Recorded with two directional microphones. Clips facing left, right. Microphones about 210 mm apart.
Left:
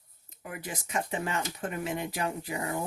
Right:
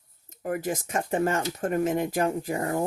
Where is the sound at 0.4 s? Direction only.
45° right (ahead or behind).